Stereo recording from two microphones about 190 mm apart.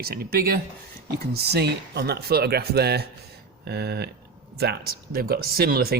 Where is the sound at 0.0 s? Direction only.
55° right (ahead or behind).